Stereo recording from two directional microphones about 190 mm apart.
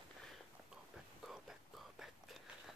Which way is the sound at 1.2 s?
Centre (ahead or behind).